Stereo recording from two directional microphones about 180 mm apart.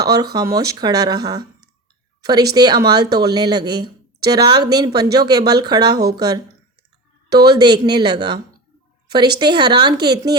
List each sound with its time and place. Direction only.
0.0 s speech: 20° right (ahead or behind)